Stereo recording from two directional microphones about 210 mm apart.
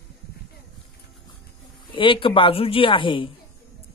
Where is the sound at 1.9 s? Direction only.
25° left (ahead or behind).